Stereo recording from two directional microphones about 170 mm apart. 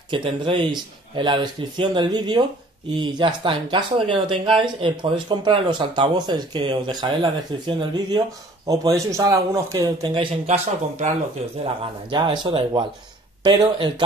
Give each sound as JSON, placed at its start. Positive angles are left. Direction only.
{"t": 0.1, "sound": "speech", "side_deg": -30}
{"t": 11.6, "sound": "speech", "side_deg": -25}